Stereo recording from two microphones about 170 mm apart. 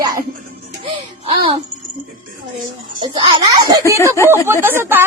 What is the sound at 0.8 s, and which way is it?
Speech, 35° right (ahead or behind).